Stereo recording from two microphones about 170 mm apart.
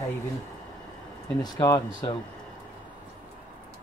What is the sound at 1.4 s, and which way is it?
Speech, 25° left (ahead or behind).